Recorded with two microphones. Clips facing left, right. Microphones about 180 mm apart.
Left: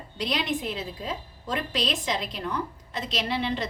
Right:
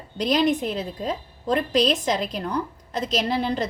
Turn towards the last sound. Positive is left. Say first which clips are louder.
# right 4 dB
turn(degrees=-40)  # may be behind; listen again after turning